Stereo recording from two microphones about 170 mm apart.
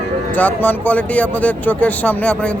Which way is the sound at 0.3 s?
10° left (ahead or behind).